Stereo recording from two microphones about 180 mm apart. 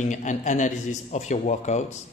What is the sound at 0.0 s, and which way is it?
A man's voice, 45° left (ahead or behind).